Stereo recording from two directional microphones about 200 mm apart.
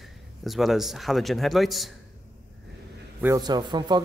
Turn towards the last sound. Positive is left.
turn(degrees=-20)  # may be behind; listen again after turning